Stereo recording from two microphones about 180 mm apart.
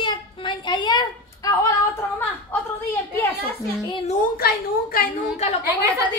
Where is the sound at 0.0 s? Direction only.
25° left (ahead or behind).